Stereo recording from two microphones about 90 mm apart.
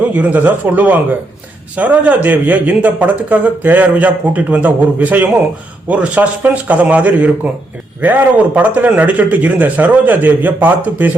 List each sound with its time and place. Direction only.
0.1 s speech: 15° right (ahead or behind)